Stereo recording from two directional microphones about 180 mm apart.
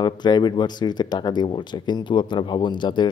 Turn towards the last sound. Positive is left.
turn(degrees=25)  # may be behind; listen again after turning